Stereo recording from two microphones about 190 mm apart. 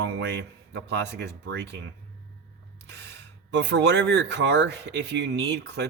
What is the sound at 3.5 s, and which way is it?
Speech, 65° right (ahead or behind).